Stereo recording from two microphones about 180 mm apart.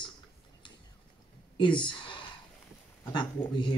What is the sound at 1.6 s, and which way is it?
Speech, 25° left (ahead or behind).